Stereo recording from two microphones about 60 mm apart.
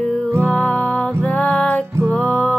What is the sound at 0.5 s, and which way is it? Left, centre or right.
Music, centre.